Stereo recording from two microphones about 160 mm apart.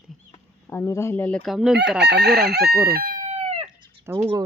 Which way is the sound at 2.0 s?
90° right.